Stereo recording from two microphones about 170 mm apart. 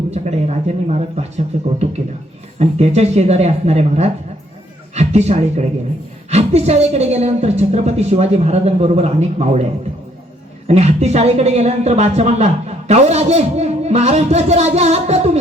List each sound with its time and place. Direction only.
0.1 s speech: 40° right (ahead or behind)
10.7 s speech: 40° right (ahead or behind)